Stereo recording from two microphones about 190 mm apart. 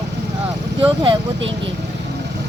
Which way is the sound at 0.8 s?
25° right (ahead or behind).